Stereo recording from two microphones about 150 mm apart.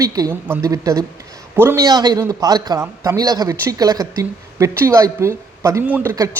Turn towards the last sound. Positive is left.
turn(degrees=-15)  # may be behind; listen again after turning